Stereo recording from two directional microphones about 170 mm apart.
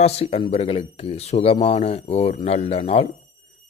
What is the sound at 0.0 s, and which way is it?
Speech, 35° left (ahead or behind).